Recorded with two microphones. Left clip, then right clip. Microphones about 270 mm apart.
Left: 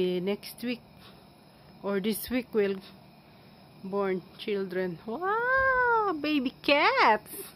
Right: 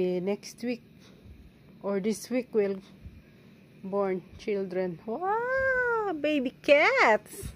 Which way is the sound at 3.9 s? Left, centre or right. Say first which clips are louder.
Right 1 dB; centre.